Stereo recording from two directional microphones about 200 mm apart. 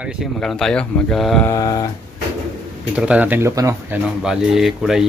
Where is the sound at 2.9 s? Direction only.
5° right (ahead or behind).